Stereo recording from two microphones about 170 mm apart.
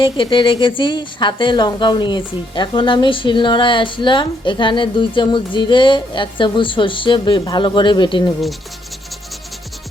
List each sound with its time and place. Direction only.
0.0 s a woman's voice: 30° left (ahead or behind)